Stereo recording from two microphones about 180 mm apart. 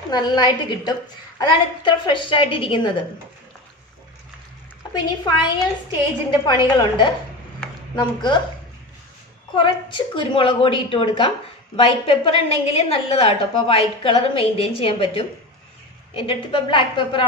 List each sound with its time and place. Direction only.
0.1 s a woman's voice: 25° left (ahead or behind)
5.2 s a woman's voice: 25° left (ahead or behind)
9.6 s a woman's voice: 25° left (ahead or behind)